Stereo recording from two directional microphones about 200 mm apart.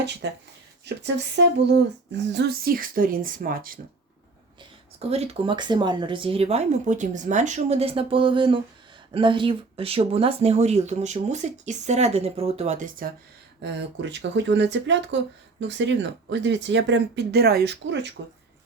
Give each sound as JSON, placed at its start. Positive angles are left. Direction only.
{"t": 0.2, "sound": "a woman's voice", "side_deg": -60}
{"t": 4.9, "sound": "speech", "side_deg": -30}
{"t": 13.6, "sound": "speech", "side_deg": -60}